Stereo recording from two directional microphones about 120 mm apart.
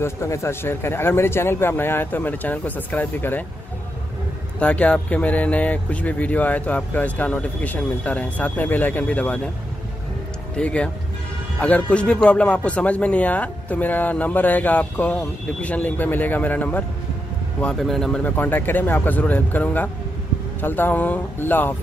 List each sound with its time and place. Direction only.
0.0 s speech: 25° left (ahead or behind)
4.6 s speech: 10° left (ahead or behind)
10.5 s speech: 10° left (ahead or behind)